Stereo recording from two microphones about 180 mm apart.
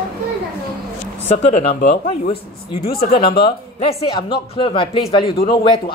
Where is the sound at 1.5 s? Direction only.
35° left (ahead or behind).